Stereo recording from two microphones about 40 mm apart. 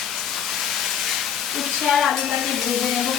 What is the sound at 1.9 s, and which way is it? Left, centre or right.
Stir, centre.